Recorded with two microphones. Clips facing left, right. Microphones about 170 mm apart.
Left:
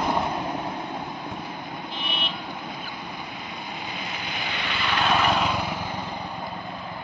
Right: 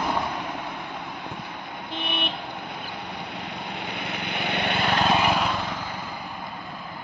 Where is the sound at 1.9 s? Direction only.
65° right (ahead or behind).